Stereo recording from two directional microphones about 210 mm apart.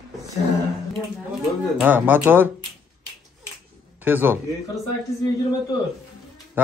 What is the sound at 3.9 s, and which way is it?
Speech, 10° right (ahead or behind).